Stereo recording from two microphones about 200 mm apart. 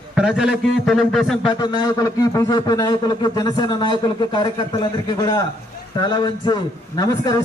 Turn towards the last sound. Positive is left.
turn(degrees=20)  # may be behind; listen again after turning